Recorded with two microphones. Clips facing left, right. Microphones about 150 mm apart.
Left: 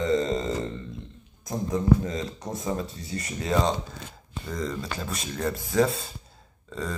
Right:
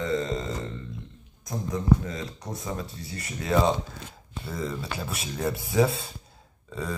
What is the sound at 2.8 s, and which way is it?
Speech, centre (ahead or behind).